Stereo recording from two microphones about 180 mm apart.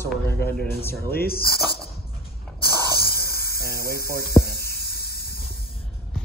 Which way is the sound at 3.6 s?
60° left (ahead or behind).